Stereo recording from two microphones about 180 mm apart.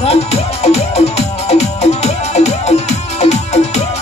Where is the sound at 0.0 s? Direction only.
35° left (ahead or behind).